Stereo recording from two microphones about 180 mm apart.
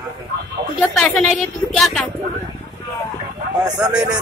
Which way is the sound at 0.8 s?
Centre (ahead or behind).